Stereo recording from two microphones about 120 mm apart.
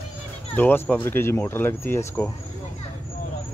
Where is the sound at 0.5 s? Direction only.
15° left (ahead or behind).